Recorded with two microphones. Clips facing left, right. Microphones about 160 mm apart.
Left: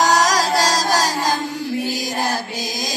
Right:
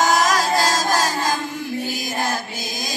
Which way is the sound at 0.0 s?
35° left (ahead or behind).